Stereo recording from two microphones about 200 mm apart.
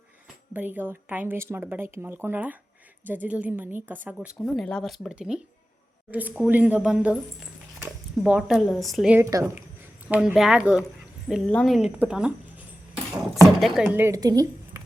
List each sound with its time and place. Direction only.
0.5 s a woman's voice: 10° right (ahead or behind)
9.2 s a woman's voice: 15° right (ahead or behind)
10.1 s a woman's voice: 5° right (ahead or behind)